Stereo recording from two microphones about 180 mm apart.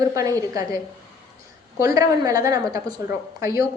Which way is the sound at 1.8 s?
20° right (ahead or behind).